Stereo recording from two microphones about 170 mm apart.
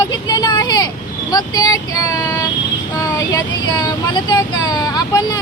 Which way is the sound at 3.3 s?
25° left (ahead or behind).